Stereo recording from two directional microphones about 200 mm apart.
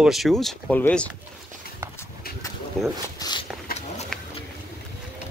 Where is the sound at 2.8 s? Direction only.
Centre (ahead or behind).